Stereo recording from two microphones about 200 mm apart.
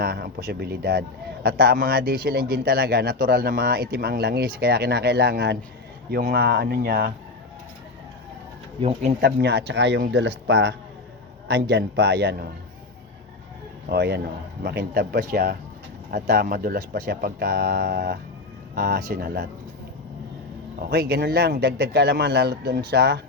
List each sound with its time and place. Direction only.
0.0 s speech: 50° right (ahead or behind)
8.8 s speech: 30° right (ahead or behind)
9.4 s speech: 55° right (ahead or behind)
13.9 s speech: 55° right (ahead or behind)
20.9 s speech: 55° right (ahead or behind)